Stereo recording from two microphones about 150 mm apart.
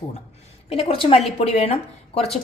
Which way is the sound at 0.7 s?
40° left (ahead or behind).